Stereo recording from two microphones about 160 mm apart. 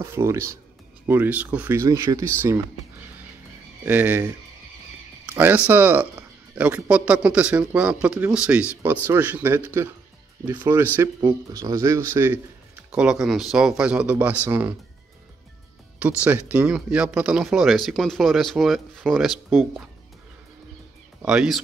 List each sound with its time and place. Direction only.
0.0 s speech: 15° right (ahead or behind)
3.8 s speech: 10° right (ahead or behind)
12.9 s speech: 5° right (ahead or behind)
16.0 s speech: 5° right (ahead or behind)
21.2 s speech: 5° right (ahead or behind)